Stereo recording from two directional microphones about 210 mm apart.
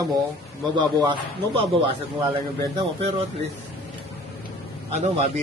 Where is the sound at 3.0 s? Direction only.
30° right (ahead or behind).